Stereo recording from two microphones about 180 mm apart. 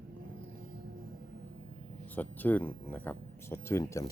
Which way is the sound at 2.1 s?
10° left (ahead or behind).